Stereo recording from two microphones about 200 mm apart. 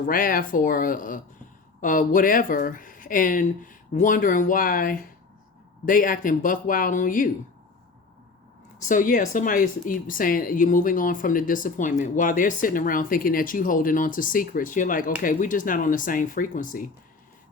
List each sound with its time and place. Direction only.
0.0 s speech: 45° left (ahead or behind)
8.9 s speech: 40° left (ahead or behind)